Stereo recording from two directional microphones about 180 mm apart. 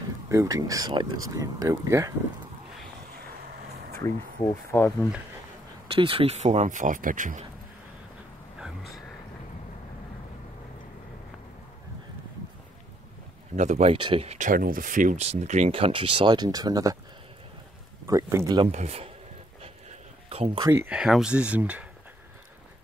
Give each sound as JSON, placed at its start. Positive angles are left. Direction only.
{"t": 0.3, "sound": "speech", "side_deg": -20}
{"t": 4.0, "sound": "speech", "side_deg": 15}
{"t": 5.9, "sound": "speech", "side_deg": -30}
{"t": 8.5, "sound": "a sound", "side_deg": 0}
{"t": 13.6, "sound": "speech", "side_deg": -40}
{"t": 14.5, "sound": "speech", "side_deg": -50}
{"t": 18.0, "sound": "speech", "side_deg": -15}
{"t": 18.6, "sound": "speech", "side_deg": -35}
{"t": 19.6, "sound": "a sound", "side_deg": -35}
{"t": 20.6, "sound": "speech", "side_deg": -10}